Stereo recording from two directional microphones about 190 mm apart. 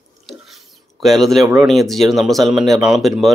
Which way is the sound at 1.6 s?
Centre (ahead or behind).